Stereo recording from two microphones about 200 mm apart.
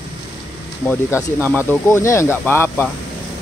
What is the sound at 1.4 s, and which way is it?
Speech, 10° left (ahead or behind).